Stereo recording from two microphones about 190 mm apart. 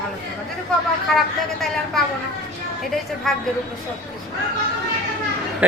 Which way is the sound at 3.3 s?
Centre (ahead or behind).